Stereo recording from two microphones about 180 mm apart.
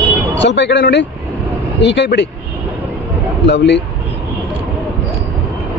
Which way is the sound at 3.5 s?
70° left (ahead or behind).